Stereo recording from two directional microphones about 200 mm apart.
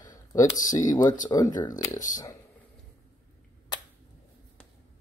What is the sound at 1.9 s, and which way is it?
Speech, 40° left (ahead or behind).